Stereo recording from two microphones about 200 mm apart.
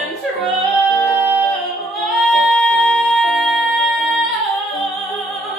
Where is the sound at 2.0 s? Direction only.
Centre (ahead or behind).